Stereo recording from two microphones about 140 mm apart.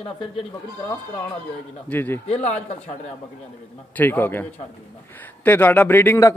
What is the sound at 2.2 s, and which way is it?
Speech, 50° left (ahead or behind).